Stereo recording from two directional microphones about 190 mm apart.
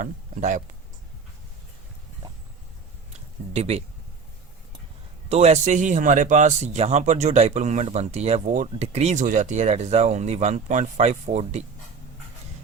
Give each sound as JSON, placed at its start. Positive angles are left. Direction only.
{"t": 0.0, "sound": "speech", "side_deg": -40}
{"t": 3.1, "sound": "a sound", "side_deg": -35}
{"t": 5.3, "sound": "speech", "side_deg": -35}